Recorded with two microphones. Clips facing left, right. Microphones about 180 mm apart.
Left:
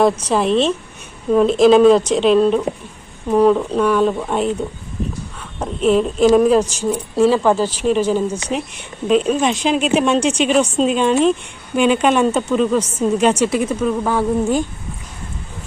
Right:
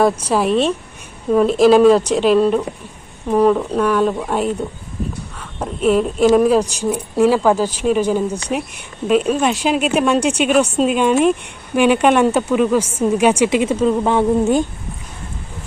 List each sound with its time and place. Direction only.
0.0 s speech: 5° right (ahead or behind)
5.5 s speech: 5° right (ahead or behind)
10.2 s a woman's voice: 60° right (ahead or behind)
10.4 s speech: 5° right (ahead or behind); by 14.6 s 20° right (ahead or behind)